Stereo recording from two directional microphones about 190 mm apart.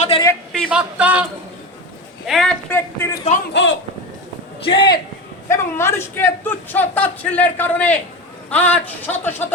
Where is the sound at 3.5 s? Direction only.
80° left.